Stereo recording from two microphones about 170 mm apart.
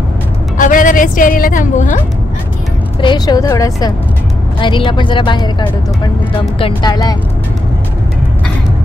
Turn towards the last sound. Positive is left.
turn(degrees=25)  # may be behind; listen again after turning